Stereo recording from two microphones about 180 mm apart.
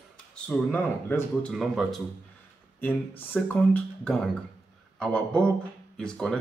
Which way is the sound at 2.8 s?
10° left (ahead or behind).